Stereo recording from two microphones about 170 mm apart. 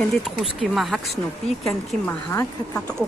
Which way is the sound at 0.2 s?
Centre (ahead or behind).